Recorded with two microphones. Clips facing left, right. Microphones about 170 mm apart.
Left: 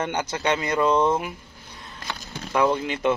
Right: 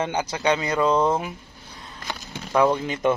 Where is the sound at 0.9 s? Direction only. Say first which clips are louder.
Even; 10° right (ahead or behind).